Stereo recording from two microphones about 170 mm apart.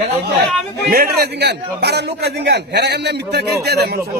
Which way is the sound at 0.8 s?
70° right (ahead or behind).